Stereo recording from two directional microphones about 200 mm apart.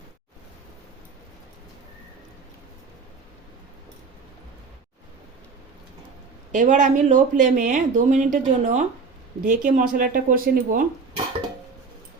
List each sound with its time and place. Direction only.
6.5 s speech: 40° right (ahead or behind)